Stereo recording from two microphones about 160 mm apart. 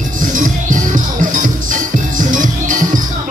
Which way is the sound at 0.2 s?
55° right (ahead or behind).